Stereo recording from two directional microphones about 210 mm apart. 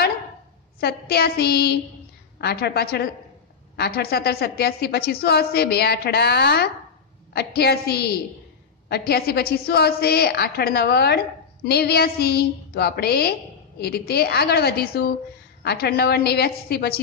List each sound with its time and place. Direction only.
0.7 s a woman's voice: 50° left (ahead or behind)